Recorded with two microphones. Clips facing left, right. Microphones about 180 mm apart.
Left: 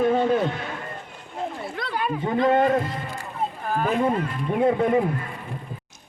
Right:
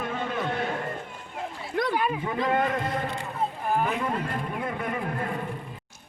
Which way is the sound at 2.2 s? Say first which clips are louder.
Left 6 dB; 30° left (ahead or behind).